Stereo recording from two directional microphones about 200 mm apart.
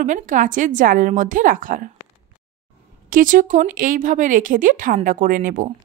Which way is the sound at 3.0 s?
45° right (ahead or behind).